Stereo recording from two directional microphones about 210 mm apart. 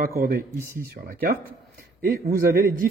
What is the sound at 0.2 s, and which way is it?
Speech, 45° right (ahead or behind).